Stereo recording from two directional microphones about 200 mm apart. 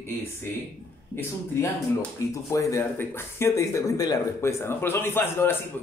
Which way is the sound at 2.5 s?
15° left (ahead or behind).